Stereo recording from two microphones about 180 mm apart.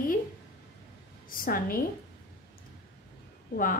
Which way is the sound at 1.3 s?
50° left (ahead or behind).